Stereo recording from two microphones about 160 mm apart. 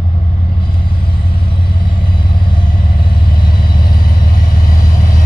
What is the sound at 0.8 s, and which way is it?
Vehicle, 65° left (ahead or behind).